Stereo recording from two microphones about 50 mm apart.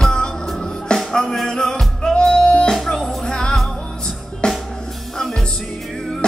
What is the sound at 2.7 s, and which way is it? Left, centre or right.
Music, centre.